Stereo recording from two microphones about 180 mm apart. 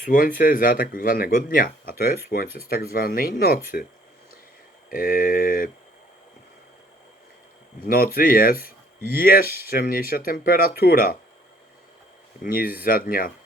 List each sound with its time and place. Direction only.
0.0 s speech: 50° left (ahead or behind)
4.9 s speech: 55° left (ahead or behind)
7.9 s speech: 55° left (ahead or behind)
12.5 s speech: 55° left (ahead or behind)